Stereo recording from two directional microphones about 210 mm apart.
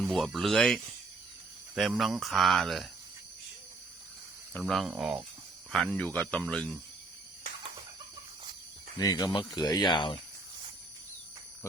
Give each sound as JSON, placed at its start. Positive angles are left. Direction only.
{"t": 0.0, "sound": "speech", "side_deg": 0}
{"t": 4.5, "sound": "speech", "side_deg": 0}
{"t": 9.0, "sound": "speech", "side_deg": 20}